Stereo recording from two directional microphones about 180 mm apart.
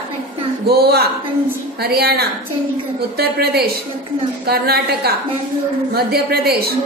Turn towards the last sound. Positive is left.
turn(degrees=-60)  # may be behind; listen again after turning